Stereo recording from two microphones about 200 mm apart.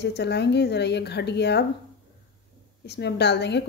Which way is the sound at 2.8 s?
55° left (ahead or behind).